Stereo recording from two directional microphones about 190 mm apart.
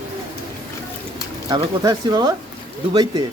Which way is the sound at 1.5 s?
20° right (ahead or behind).